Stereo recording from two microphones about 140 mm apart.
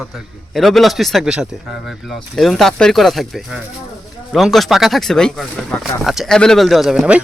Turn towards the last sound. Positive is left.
turn(degrees=-5)  # may be behind; listen again after turning